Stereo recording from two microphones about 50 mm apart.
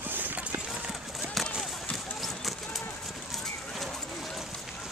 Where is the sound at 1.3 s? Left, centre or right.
Centre.